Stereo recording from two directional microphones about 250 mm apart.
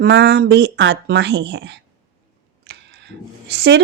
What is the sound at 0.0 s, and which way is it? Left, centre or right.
Speech, right.